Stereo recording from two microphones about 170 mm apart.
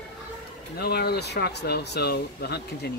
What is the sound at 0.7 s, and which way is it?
Speech, 65° left (ahead or behind).